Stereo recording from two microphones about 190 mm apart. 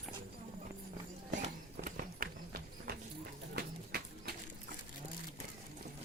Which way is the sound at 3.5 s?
55° right (ahead or behind).